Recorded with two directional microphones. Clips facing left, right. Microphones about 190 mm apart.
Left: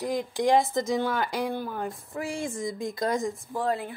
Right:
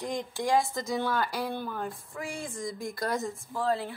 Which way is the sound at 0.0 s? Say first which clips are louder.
Left 6 dB; 10° left (ahead or behind).